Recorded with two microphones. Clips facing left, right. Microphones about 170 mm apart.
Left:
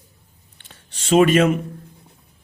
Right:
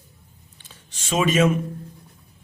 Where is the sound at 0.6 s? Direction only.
60° left (ahead or behind).